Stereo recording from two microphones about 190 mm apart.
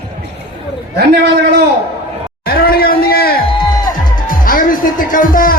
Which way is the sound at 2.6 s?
50° left (ahead or behind).